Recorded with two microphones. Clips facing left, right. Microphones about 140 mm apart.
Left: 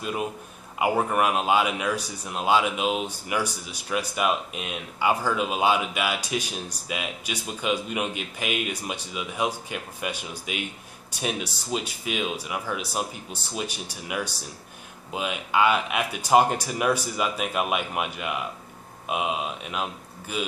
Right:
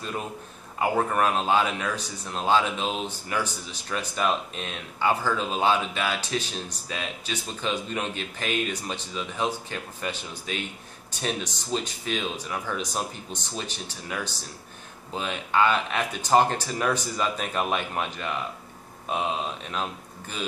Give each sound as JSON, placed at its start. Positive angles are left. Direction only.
{"t": 0.7, "sound": "speech", "side_deg": 10}